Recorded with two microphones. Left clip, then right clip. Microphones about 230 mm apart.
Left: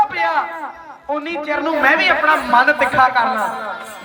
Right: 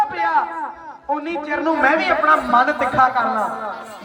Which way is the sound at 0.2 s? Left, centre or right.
Left.